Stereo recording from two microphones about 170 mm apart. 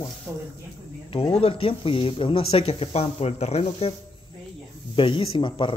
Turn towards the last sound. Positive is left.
turn(degrees=30)  # may be behind; listen again after turning